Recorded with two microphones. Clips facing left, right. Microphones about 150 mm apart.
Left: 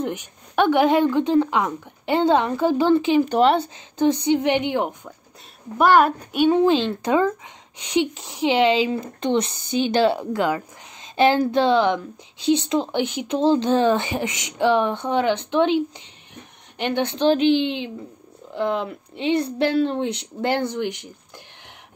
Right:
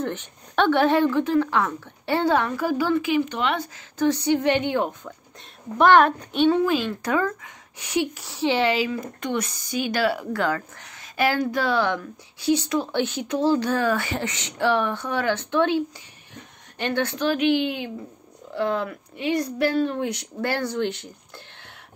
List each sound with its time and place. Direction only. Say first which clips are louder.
0.0 s a woman's voice: left 2 dB; 10° left (ahead or behind); by 3.2 s 25° left (ahead or behind)
3.2 s a woman's voice: left 7 dB; 40° left (ahead or behind); by 6.6 s 10° left (ahead or behind)
6.6 s a woman's voice: left 4 dB; 25° left (ahead or behind)